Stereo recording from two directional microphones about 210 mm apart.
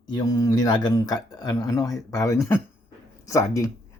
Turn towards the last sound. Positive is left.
turn(degrees=15)  # may be behind; listen again after turning